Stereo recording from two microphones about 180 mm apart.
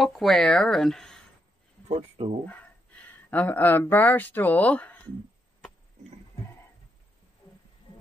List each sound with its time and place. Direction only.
0.0 s speech: centre (ahead or behind)
1.9 s speech: 35° right (ahead or behind)
2.4 s speech: 10° left (ahead or behind)